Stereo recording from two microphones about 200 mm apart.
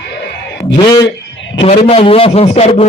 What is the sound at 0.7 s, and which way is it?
A man's voice, 20° left (ahead or behind).